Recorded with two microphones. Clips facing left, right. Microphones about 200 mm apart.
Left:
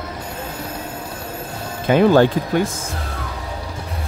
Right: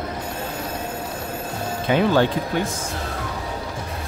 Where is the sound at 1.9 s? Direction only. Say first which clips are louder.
Left 5 dB; 50° left (ahead or behind).